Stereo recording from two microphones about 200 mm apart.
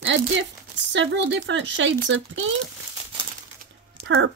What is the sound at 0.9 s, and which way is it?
Speech, 65° right (ahead or behind).